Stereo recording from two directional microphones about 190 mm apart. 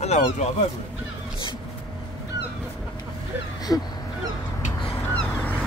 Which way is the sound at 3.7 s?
15° left (ahead or behind).